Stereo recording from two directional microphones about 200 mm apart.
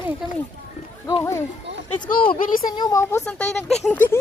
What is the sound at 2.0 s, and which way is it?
Speech, 45° left (ahead or behind).